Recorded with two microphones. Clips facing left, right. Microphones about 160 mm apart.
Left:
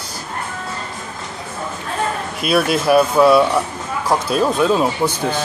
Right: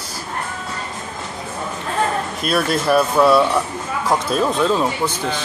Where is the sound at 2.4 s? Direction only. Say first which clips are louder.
Left 4 dB; 5° left (ahead or behind).